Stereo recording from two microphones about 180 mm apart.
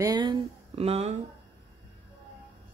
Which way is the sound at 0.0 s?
20° right (ahead or behind).